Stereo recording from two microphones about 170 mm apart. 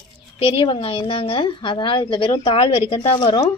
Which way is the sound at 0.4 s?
30° left (ahead or behind).